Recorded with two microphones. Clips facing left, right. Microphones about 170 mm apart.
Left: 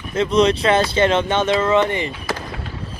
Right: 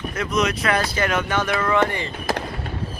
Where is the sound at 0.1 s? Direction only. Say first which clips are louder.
Left 8 dB; 30° left (ahead or behind).